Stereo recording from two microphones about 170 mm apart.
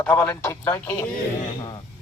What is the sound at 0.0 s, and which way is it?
Speech, 10° left (ahead or behind).